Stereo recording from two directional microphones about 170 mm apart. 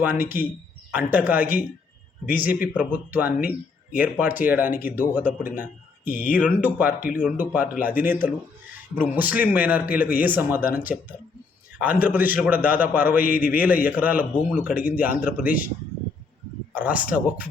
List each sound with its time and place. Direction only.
0.0 s a man's voice: 10° right (ahead or behind)
6.1 s speech: 50° left (ahead or behind)
6.3 s a man's voice: 10° right (ahead or behind)
16.7 s a man's voice: 10° right (ahead or behind)